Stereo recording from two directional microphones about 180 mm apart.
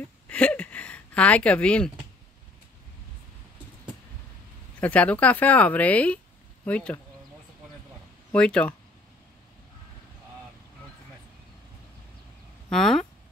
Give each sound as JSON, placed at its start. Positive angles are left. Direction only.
{"t": 0.3, "sound": "a sound", "side_deg": 5}
{"t": 4.7, "sound": "speech", "side_deg": 10}
{"t": 8.3, "sound": "speech", "side_deg": 5}
{"t": 12.6, "sound": "speech", "side_deg": 0}